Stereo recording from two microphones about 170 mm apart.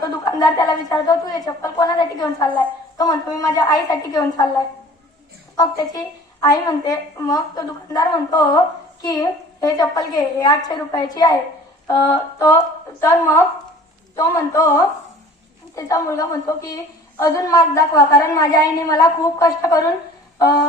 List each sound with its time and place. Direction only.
0.3 s a woman's voice: 25° left (ahead or behind)
5.5 s a woman's voice: 20° left (ahead or behind)
11.9 s female singing: 15° left (ahead or behind)
15.7 s a woman's voice: 20° left (ahead or behind)